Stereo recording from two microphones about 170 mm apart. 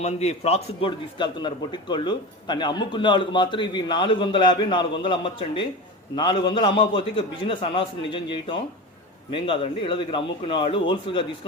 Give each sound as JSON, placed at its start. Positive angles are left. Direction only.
{"t": 0.0, "sound": "a man's voice", "side_deg": 40}